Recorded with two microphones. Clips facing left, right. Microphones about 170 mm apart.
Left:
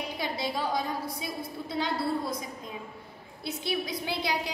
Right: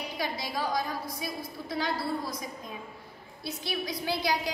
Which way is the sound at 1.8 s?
20° left (ahead or behind).